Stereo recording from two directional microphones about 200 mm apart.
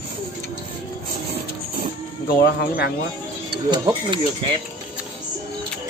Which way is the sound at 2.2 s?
50° left (ahead or behind).